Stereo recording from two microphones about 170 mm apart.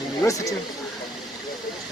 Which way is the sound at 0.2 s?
20° left (ahead or behind).